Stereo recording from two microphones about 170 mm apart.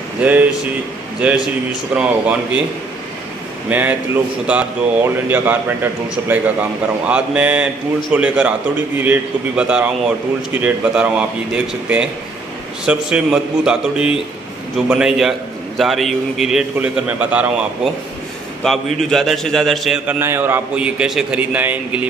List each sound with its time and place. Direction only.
0.2 s a man's voice: 10° right (ahead or behind)
3.6 s a man's voice: 10° right (ahead or behind)
18.6 s a man's voice: centre (ahead or behind)